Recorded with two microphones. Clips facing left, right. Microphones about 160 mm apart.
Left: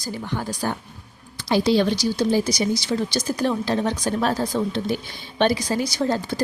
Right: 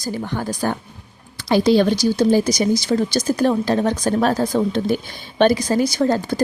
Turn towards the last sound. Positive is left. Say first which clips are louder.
# right 5 dB
turn(degrees=-50)  # may be behind; listen again after turning